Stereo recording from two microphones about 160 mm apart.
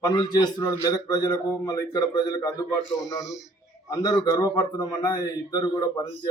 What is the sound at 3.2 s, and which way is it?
Speech, centre (ahead or behind).